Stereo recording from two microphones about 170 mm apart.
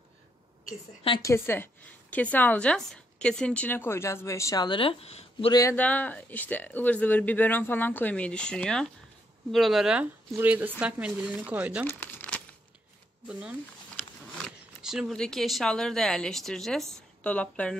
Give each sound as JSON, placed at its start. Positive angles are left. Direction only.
{"t": 1.2, "sound": "a woman's voice", "side_deg": 15}
{"t": 5.5, "sound": "speech", "side_deg": 20}
{"t": 5.8, "sound": "a woman's voice", "side_deg": 10}
{"t": 11.8, "sound": "crumpling", "side_deg": 15}
{"t": 13.3, "sound": "a woman's voice", "side_deg": -5}
{"t": 14.8, "sound": "a woman's voice", "side_deg": 0}